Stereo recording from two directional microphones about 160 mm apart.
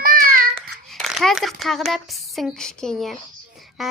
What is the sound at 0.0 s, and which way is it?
Child singing, 60° right (ahead or behind).